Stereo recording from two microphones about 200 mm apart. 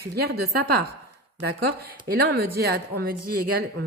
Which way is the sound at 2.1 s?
50° right (ahead or behind).